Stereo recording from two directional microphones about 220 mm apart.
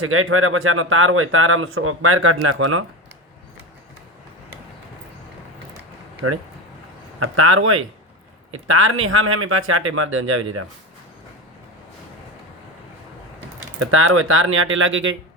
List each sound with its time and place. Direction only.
0.0 s speech: 70° right (ahead or behind)
6.2 s speech: 75° right (ahead or behind)
13.7 s speech: 70° right (ahead or behind)